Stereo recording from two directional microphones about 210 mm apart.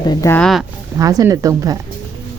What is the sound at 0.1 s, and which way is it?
Speech, 15° left (ahead or behind).